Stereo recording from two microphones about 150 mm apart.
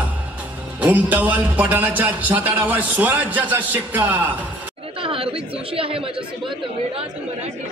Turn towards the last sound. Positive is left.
turn(degrees=-40)  # may be behind; listen again after turning